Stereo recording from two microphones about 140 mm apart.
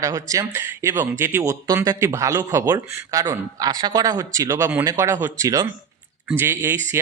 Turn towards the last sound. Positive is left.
turn(degrees=-15)  # may be behind; listen again after turning